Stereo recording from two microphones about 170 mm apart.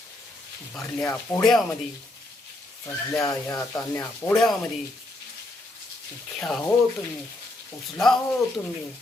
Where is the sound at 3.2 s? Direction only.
15° left (ahead or behind).